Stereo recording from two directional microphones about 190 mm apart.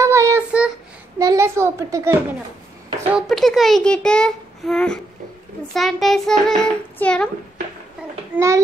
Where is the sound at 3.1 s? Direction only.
Centre (ahead or behind).